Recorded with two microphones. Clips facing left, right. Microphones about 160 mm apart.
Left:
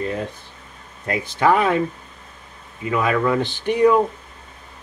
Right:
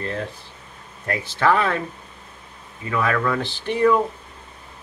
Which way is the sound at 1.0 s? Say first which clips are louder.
Left 2 dB; 15° left (ahead or behind).